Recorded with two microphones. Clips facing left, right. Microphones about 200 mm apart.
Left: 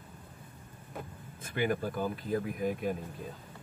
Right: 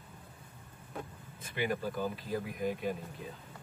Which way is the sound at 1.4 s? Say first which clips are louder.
Left 3 dB; 50° left (ahead or behind).